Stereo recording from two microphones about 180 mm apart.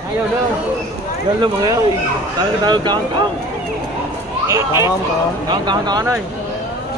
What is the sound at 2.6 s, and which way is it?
Speech, 25° right (ahead or behind).